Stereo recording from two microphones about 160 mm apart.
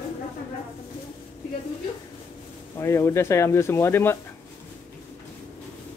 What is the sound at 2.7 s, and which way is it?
Speech, 15° left (ahead or behind).